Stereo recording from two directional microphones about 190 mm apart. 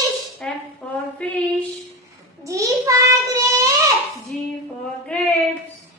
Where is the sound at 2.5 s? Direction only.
15° right (ahead or behind).